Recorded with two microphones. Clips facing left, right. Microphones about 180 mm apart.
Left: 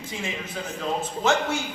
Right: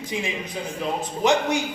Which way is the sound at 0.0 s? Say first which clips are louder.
Right 4 dB; 15° right (ahead or behind).